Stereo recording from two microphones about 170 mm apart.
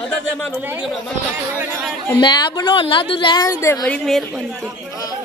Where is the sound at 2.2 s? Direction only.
25° left (ahead or behind); by 4.7 s centre (ahead or behind).